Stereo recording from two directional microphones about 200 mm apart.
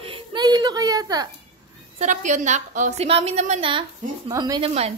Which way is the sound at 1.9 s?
40° right (ahead or behind).